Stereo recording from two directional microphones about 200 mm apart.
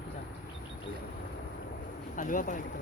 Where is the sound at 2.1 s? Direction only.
40° left (ahead or behind).